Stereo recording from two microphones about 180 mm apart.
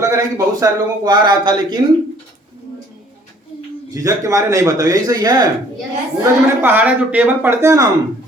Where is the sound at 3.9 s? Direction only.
20° right (ahead or behind).